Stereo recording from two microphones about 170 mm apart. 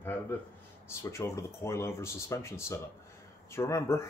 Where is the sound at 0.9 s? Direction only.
15° left (ahead or behind).